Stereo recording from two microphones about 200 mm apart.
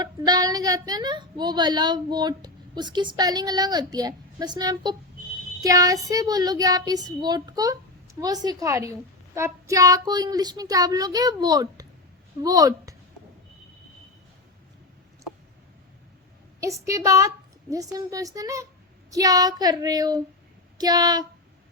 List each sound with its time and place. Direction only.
0.0 s a woman's voice: 20° right (ahead or behind)
16.6 s a woman's voice: 15° right (ahead or behind)